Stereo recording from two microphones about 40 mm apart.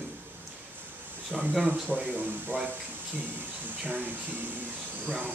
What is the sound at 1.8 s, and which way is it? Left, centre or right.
Speech, right.